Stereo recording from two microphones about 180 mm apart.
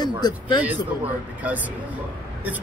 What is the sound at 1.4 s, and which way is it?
Speech, 10° right (ahead or behind).